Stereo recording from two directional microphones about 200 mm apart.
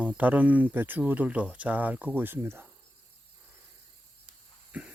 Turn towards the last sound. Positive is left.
turn(degrees=-5)  # may be behind; listen again after turning